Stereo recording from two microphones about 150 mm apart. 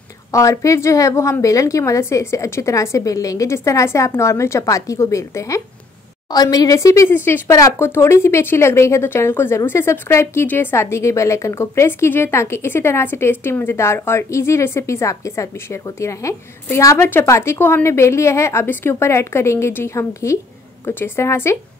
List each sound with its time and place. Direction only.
0.3 s a woman's voice: 20° left (ahead or behind)